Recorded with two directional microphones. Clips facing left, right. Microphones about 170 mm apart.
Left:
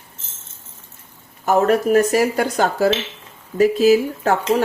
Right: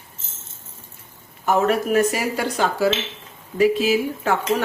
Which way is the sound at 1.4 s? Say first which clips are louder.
Left 3 dB; 40° left (ahead or behind).